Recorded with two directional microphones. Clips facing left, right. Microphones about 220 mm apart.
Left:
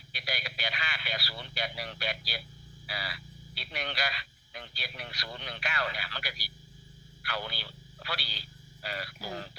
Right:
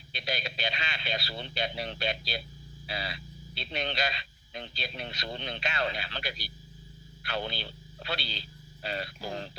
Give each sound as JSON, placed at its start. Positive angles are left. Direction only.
{"t": 0.1, "sound": "speech", "side_deg": -25}